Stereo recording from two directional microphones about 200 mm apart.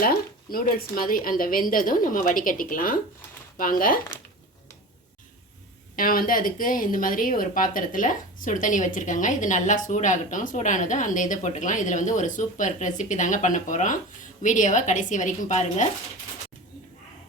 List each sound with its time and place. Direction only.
0.0 s a woman's voice: 50° left (ahead or behind)
6.0 s speech: 45° left (ahead or behind)